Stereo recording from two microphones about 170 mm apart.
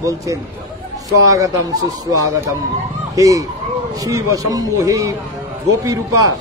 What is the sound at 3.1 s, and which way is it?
Speech, 20° right (ahead or behind).